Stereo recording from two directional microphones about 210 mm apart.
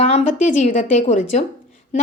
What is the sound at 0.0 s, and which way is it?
A woman's voice, 35° left (ahead or behind).